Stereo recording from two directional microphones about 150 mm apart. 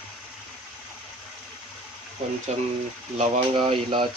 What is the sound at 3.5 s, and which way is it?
Speech, 35° right (ahead or behind).